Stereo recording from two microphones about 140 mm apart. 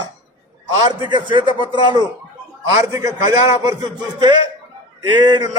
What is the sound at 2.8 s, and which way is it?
Speech, 20° right (ahead or behind).